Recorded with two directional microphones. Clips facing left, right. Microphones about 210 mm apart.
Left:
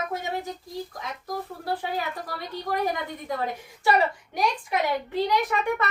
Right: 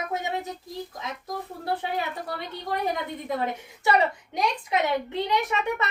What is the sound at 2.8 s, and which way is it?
A child's voice, 20° right (ahead or behind).